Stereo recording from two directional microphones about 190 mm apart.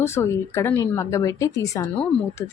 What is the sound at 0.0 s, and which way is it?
A woman's voice, 15° left (ahead or behind).